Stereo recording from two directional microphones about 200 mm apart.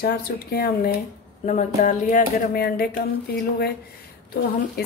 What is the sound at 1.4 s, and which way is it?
Speech, 40° left (ahead or behind).